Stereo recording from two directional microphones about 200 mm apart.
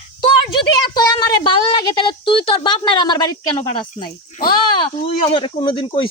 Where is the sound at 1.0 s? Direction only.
20° left (ahead or behind).